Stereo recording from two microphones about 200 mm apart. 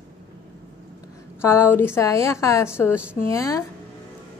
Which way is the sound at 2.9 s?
5° right (ahead or behind).